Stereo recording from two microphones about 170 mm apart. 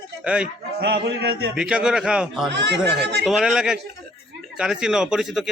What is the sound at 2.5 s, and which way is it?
Speech, 85° right.